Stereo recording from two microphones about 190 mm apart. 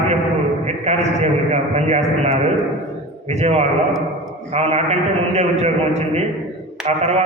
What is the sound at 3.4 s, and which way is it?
A man's voice, 35° right (ahead or behind).